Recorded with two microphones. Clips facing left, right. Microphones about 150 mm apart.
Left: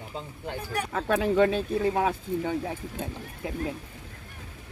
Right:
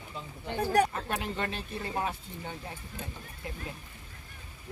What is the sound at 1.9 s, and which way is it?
Speech, 90° left.